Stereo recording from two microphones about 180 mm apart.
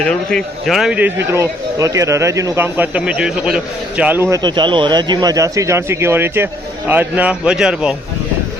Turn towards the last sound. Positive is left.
turn(degrees=-5)  # may be behind; listen again after turning